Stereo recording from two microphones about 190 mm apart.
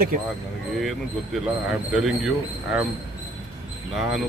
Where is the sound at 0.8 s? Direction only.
Centre (ahead or behind).